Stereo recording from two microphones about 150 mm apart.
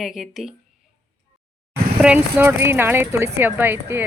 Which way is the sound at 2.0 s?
10° right (ahead or behind).